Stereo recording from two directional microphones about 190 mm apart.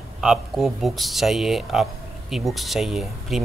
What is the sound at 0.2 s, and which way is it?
Speech, centre (ahead or behind).